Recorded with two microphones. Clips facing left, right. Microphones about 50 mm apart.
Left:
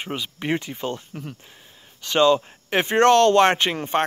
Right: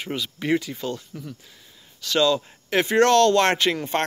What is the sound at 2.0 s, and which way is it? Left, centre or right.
Speech, left.